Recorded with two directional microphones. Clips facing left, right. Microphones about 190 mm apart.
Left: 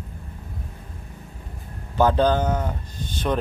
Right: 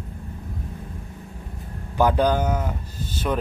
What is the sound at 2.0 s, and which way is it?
Speech, 10° right (ahead or behind).